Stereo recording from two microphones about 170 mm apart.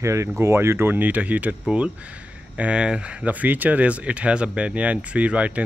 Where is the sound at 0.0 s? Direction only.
15° right (ahead or behind).